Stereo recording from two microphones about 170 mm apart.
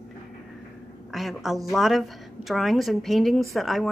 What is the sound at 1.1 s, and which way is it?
A woman's voice, centre (ahead or behind).